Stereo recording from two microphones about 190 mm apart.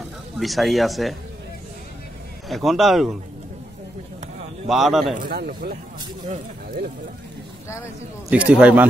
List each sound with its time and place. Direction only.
0.4 s speech: centre (ahead or behind)
2.5 s speech: centre (ahead or behind)
4.6 s speech: centre (ahead or behind)
5.2 s a man's voice: 50° right (ahead or behind)
7.6 s speech: 15° left (ahead or behind)
8.3 s speech: 5° right (ahead or behind)